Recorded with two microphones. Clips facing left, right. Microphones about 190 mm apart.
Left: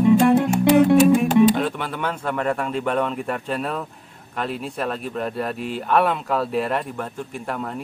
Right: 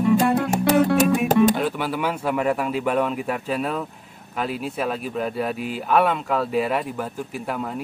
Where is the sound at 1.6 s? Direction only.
5° right (ahead or behind).